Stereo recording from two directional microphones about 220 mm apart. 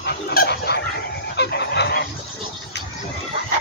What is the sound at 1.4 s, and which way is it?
Fowl, 50° left (ahead or behind).